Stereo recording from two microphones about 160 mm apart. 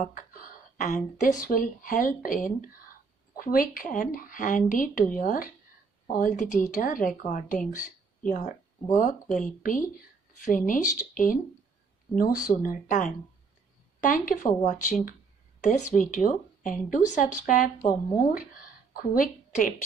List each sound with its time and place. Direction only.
0.0 s a woman's voice: 60° left (ahead or behind)